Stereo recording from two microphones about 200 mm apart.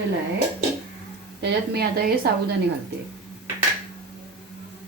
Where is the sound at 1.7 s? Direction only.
50° right (ahead or behind).